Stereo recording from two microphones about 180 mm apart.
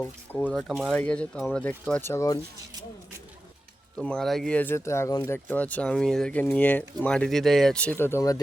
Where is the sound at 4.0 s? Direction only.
5° left (ahead or behind).